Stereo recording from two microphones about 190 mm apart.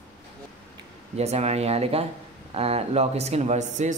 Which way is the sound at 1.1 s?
35° right (ahead or behind).